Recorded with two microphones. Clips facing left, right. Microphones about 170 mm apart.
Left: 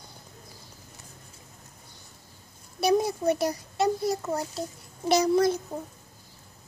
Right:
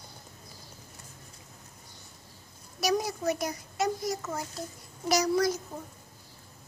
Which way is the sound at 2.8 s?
30° left (ahead or behind).